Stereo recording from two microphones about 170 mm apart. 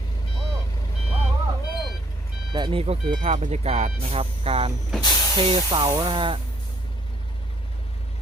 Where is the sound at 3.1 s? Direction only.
45° right (ahead or behind); by 6.3 s 30° right (ahead or behind).